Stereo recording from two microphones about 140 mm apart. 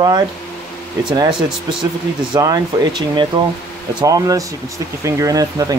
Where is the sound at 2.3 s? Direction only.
30° right (ahead or behind).